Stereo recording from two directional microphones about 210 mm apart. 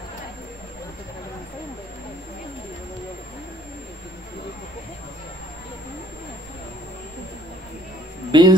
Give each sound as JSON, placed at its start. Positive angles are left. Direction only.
{"t": 8.3, "sound": "speech", "side_deg": -20}